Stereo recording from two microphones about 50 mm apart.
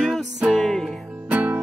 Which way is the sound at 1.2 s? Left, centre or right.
Right.